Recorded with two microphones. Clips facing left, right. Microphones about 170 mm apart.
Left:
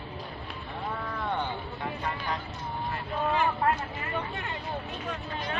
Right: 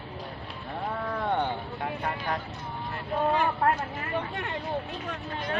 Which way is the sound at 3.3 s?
50° right (ahead or behind).